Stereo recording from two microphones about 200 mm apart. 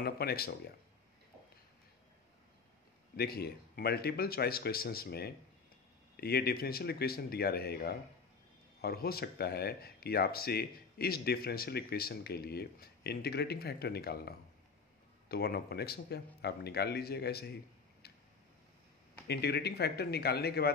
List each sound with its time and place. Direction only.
0.0 s speech: 50° left (ahead or behind)
3.2 s speech: 50° left (ahead or behind)
18.0 s tick-tock: 55° left (ahead or behind)
19.2 s speech: 55° left (ahead or behind)